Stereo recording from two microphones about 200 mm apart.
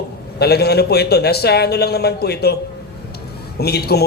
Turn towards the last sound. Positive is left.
turn(degrees=55)  # may be behind; listen again after turning